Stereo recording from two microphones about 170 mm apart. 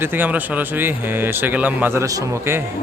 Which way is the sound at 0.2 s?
10° right (ahead or behind).